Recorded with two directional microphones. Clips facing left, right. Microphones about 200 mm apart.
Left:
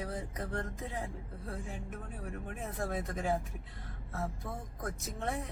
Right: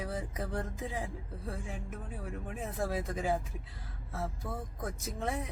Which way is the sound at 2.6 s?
Centre (ahead or behind).